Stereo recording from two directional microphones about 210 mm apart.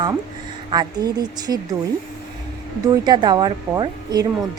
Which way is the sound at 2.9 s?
20° right (ahead or behind).